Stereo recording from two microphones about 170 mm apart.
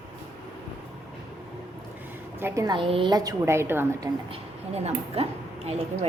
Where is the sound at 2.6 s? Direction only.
30° right (ahead or behind); by 4.1 s 15° right (ahead or behind).